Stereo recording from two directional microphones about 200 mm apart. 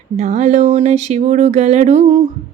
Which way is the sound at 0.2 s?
35° right (ahead or behind).